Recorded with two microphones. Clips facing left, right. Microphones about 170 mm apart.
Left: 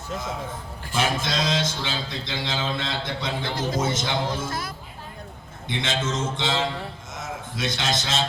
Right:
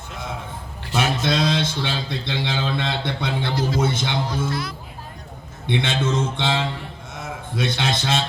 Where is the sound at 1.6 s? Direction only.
60° right (ahead or behind).